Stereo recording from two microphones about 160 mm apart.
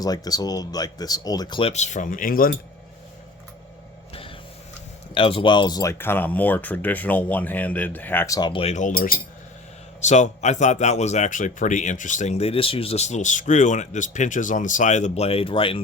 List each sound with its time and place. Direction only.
0.0 s speech: 25° left (ahead or behind)
1.7 s speech: 45° left (ahead or behind)
5.1 s speech: 35° left (ahead or behind); by 8.4 s 15° left (ahead or behind)
8.4 s speech: 30° left (ahead or behind)
8.7 s speech: 55° left (ahead or behind)
10.0 s speech: 45° left (ahead or behind)